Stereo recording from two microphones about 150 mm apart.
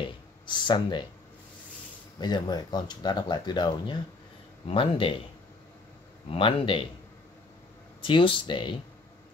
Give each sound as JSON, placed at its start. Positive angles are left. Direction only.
{"t": 0.5, "sound": "speech", "side_deg": 30}
{"t": 2.1, "sound": "speech", "side_deg": 30}
{"t": 6.3, "sound": "speech", "side_deg": 35}
{"t": 8.0, "sound": "speech", "side_deg": 35}